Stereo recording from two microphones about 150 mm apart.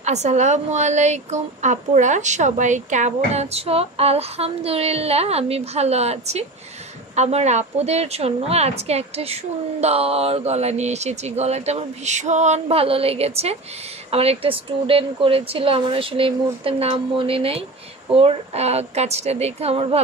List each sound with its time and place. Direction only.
0.0 s a woman's voice: 50° right (ahead or behind)